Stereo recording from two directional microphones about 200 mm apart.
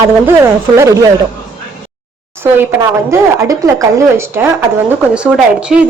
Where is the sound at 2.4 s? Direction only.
10° right (ahead or behind).